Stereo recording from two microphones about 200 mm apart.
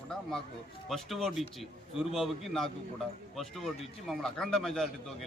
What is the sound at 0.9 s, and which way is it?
A man's voice, centre (ahead or behind).